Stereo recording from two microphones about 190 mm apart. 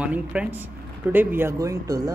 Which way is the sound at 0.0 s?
5° right (ahead or behind).